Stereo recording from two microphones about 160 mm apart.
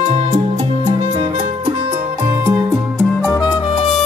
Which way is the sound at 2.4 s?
15° right (ahead or behind).